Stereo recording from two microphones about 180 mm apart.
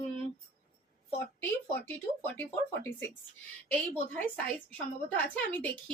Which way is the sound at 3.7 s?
10° left (ahead or behind).